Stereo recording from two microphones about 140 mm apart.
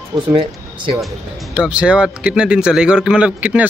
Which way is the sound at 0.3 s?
35° right (ahead or behind).